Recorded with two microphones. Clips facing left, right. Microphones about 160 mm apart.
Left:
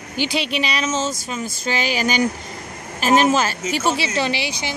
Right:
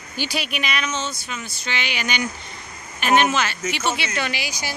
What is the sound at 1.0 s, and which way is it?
Speech, 90° left.